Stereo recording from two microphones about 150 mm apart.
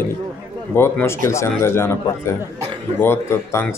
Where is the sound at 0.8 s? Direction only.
15° left (ahead or behind).